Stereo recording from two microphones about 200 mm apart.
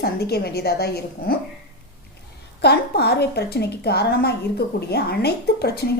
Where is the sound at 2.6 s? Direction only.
55° left (ahead or behind).